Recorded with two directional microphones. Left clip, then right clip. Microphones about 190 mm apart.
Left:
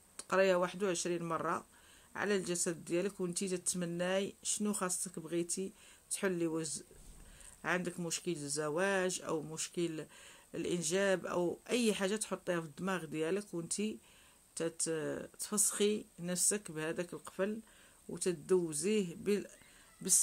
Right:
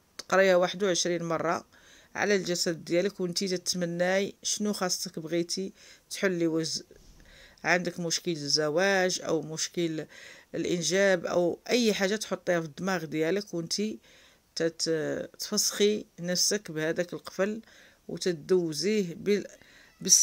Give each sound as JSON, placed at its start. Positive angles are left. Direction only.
{"t": 0.2, "sound": "speech", "side_deg": -30}